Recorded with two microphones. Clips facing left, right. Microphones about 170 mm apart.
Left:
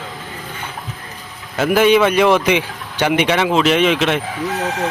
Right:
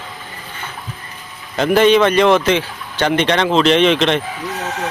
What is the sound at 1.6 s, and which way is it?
Speech, 5° left (ahead or behind).